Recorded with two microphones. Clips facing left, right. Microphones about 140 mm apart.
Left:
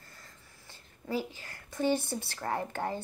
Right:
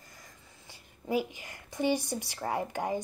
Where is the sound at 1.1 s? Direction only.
15° right (ahead or behind).